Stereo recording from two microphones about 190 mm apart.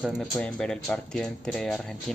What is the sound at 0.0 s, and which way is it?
Speech, 5° left (ahead or behind).